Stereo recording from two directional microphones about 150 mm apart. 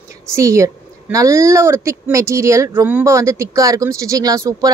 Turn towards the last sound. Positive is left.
turn(degrees=-25)  # may be behind; listen again after turning